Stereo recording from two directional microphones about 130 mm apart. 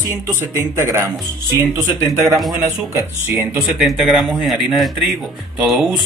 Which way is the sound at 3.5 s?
5° right (ahead or behind).